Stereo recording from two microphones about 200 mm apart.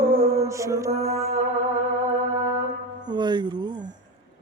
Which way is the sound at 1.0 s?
30° right (ahead or behind).